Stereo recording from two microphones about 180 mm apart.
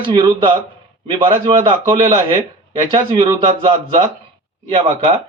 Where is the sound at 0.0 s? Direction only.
25° right (ahead or behind).